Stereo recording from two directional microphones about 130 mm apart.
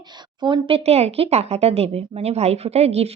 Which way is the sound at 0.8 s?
50° right (ahead or behind).